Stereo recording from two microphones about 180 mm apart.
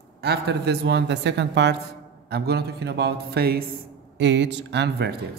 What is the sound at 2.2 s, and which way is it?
A man's voice, 60° right (ahead or behind).